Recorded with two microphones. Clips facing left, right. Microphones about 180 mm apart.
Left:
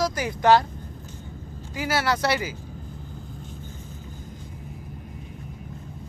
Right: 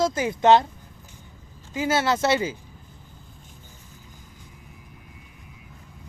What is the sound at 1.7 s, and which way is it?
Speech, 25° right (ahead or behind).